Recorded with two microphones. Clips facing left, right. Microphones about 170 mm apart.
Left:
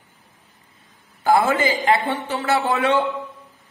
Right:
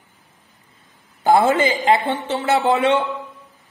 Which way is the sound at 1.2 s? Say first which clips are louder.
Right 2 dB; 25° right (ahead or behind).